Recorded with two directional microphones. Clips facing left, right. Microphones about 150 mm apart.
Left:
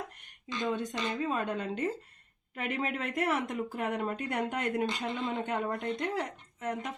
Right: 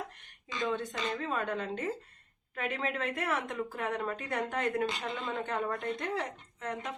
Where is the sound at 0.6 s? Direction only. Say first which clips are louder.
Left 1 dB; 15° left (ahead or behind).